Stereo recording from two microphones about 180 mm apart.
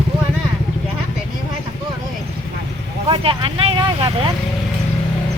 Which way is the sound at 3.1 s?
30° right (ahead or behind).